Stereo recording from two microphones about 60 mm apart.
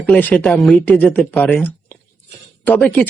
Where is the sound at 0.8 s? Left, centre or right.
Left.